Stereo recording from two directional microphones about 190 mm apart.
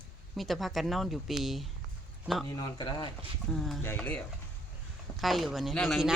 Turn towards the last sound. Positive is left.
turn(degrees=0)  # may be behind; listen again after turning